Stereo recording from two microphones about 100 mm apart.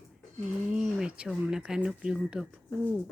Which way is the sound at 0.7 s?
10° right (ahead or behind).